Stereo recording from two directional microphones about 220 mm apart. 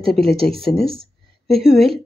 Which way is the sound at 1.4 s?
Centre (ahead or behind).